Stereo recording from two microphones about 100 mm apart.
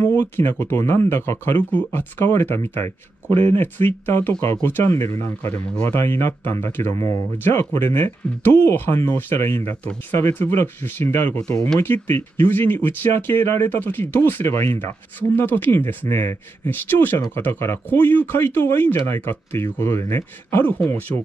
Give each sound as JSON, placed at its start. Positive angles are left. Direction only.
{"t": 0.0, "sound": "speech", "side_deg": 20}